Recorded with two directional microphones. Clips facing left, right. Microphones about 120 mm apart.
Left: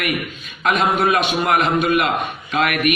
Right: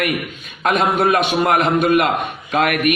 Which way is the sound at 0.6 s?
45° right (ahead or behind).